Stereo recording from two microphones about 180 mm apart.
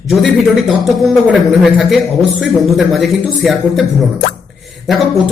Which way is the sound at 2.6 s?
Centre (ahead or behind).